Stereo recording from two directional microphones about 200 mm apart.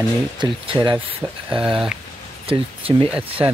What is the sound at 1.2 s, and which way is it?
Speech, 5° left (ahead or behind).